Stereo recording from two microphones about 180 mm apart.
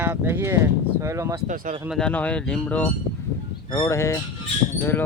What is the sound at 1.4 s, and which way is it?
Speech, 45° right (ahead or behind).